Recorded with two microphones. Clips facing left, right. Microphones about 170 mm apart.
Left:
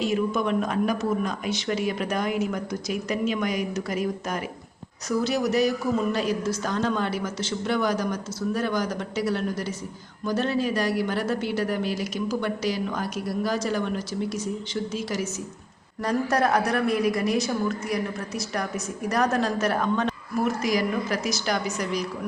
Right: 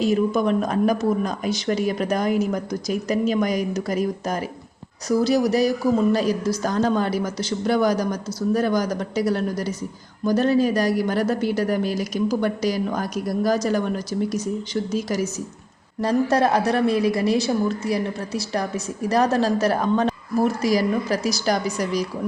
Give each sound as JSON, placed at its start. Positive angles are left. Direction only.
{"t": 0.0, "sound": "a woman's voice", "side_deg": -40}
{"t": 16.0, "sound": "a woman's voice", "side_deg": -30}